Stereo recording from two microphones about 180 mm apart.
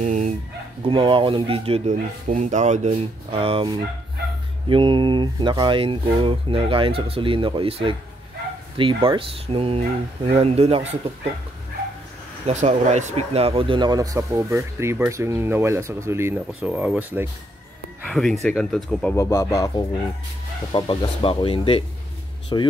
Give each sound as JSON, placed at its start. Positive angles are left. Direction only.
{"t": 0.0, "sound": "dog", "side_deg": -40}
{"t": 0.8, "sound": "speech", "side_deg": -30}
{"t": 12.4, "sound": "speech", "side_deg": -40}
{"t": 18.0, "sound": "speech", "side_deg": 0}
{"t": 19.1, "sound": "speech", "side_deg": 15}
{"t": 20.7, "sound": "speech", "side_deg": 30}